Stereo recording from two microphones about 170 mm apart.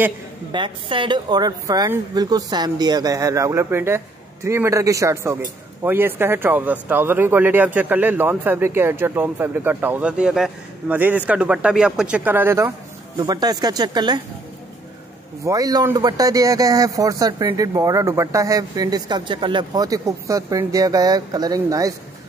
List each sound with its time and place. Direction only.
0.5 s speech: 30° right (ahead or behind)
15.4 s speech: 20° right (ahead or behind)